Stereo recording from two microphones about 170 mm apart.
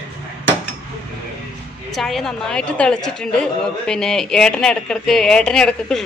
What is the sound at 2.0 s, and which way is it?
A man's voice, centre (ahead or behind).